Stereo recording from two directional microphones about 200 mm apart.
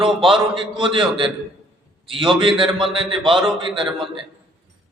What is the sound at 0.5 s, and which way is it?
A man's voice, 25° right (ahead or behind).